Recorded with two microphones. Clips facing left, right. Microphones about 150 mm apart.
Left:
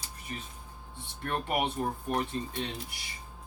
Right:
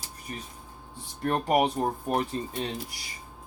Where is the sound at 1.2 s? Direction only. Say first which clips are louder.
Right 7 dB; 40° right (ahead or behind).